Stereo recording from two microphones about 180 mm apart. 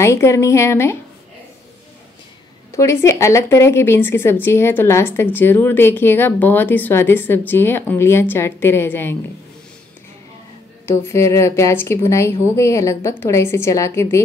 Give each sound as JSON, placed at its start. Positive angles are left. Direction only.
{"t": 0.0, "sound": "speech", "side_deg": 15}
{"t": 2.7, "sound": "speech", "side_deg": 15}
{"t": 10.9, "sound": "speech", "side_deg": 15}